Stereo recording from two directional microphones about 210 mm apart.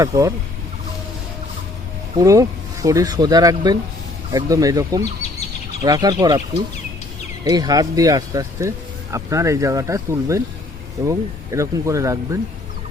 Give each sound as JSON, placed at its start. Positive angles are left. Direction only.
{"t": 0.0, "sound": "speech", "side_deg": -15}
{"t": 2.1, "sound": "speech", "side_deg": -15}
{"t": 7.4, "sound": "speech", "side_deg": -15}